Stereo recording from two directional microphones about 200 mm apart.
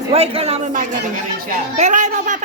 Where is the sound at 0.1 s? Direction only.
30° right (ahead or behind).